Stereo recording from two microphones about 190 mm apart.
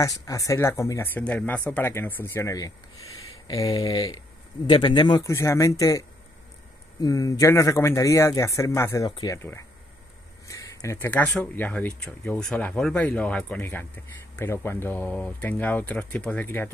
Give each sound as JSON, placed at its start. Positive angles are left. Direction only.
{"t": 0.2, "sound": "speech", "side_deg": 15}